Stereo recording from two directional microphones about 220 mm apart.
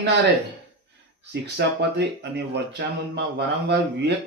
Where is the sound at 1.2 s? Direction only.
50° right (ahead or behind).